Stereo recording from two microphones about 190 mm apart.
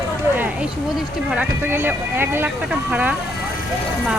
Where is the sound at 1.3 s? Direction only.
10° right (ahead or behind).